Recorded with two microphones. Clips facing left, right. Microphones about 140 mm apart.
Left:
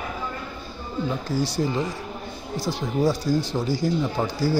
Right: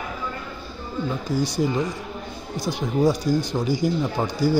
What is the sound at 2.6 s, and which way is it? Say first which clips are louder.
Speech: right 2 dB; 20° right (ahead or behind).